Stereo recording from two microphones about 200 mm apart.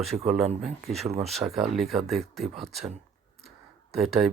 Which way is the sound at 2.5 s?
35° right (ahead or behind).